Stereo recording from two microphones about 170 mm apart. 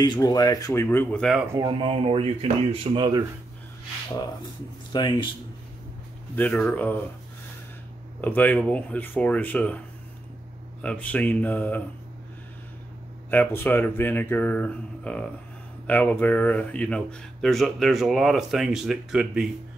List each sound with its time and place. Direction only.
0.0 s speech: 25° left (ahead or behind); by 1.4 s 5° left (ahead or behind)
1.5 s speech: 25° right (ahead or behind)
4.9 s speech: 25° left (ahead or behind)
6.3 s speech: 5° left (ahead or behind)
8.2 s speech: 10° left (ahead or behind)
10.8 s speech: 5° left (ahead or behind)
13.3 s speech: 10° left (ahead or behind)